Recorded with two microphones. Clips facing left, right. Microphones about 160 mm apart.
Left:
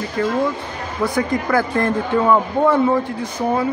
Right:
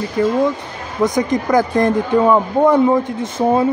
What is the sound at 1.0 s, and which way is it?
A man's voice, 20° right (ahead or behind).